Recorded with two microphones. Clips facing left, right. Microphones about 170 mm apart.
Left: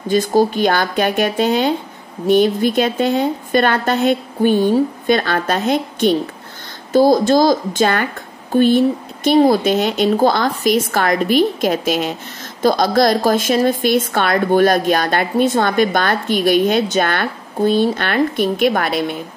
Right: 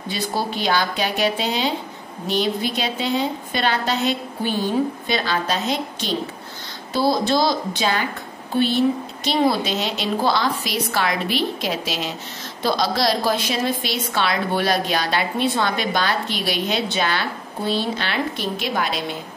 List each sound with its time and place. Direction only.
0.1 s a woman's voice: 45° left (ahead or behind)